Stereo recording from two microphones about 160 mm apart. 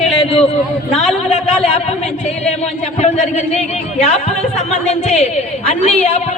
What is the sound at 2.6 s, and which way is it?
A woman's voice, 45° left (ahead or behind).